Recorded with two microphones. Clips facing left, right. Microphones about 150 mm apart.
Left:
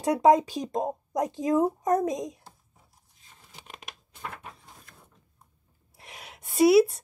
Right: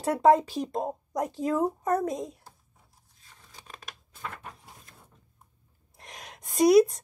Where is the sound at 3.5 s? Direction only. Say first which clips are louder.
Left 1 dB; 20° left (ahead or behind).